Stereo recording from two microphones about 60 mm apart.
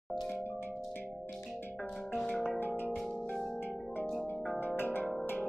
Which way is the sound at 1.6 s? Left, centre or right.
Left.